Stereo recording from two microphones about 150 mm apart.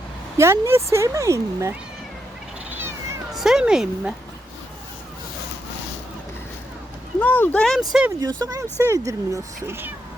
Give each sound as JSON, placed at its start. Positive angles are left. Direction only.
{"t": 0.3, "sound": "speech", "side_deg": -15}
{"t": 2.6, "sound": "cat", "side_deg": -15}
{"t": 3.3, "sound": "a woman's voice", "side_deg": 0}
{"t": 7.2, "sound": "speech", "side_deg": 10}
{"t": 8.2, "sound": "speech", "side_deg": -25}